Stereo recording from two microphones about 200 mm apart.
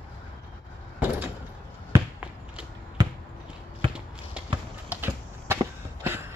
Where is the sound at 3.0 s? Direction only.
20° right (ahead or behind).